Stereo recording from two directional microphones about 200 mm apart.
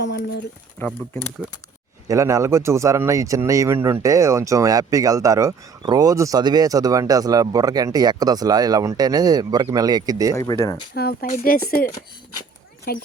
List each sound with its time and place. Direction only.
0.0 s speech: 60° left (ahead or behind)
0.8 s speech: 10° left (ahead or behind)
2.0 s speech: 15° right (ahead or behind)
10.3 s speech: 15° left (ahead or behind)
10.9 s speech: 50° left (ahead or behind)
12.9 s speech: 45° left (ahead or behind)